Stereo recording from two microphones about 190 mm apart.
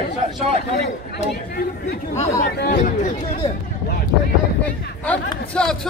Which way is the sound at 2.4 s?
55° left (ahead or behind).